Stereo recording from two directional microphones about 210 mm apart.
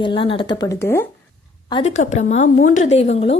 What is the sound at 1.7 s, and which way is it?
A woman's voice, 30° left (ahead or behind).